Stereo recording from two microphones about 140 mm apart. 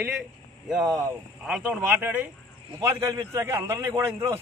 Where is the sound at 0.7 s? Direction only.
Centre (ahead or behind).